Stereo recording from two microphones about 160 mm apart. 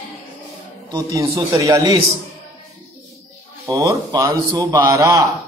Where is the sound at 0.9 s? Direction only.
25° right (ahead or behind).